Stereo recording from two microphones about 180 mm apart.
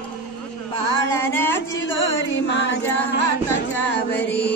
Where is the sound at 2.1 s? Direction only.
90° left; by 4.3 s 70° left (ahead or behind).